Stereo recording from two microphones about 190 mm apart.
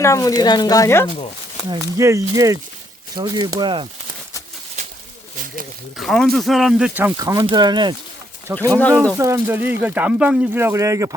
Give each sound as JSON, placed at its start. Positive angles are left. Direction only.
{"t": 0.0, "sound": "speech", "side_deg": 15}
{"t": 1.7, "sound": "speech", "side_deg": -15}
{"t": 6.0, "sound": "speech", "side_deg": 0}